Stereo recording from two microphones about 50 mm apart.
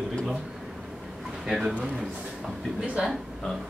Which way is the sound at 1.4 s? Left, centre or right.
Centre.